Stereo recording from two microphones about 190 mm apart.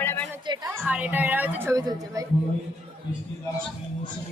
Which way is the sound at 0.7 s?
5° right (ahead or behind).